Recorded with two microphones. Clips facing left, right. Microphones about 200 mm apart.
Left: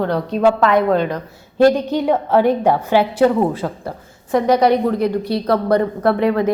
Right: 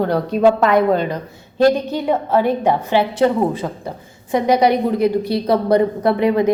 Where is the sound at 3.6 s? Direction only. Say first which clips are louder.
Left 1 dB; 5° right (ahead or behind).